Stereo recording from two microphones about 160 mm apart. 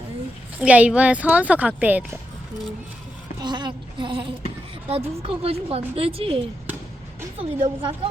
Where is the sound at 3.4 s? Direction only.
30° right (ahead or behind).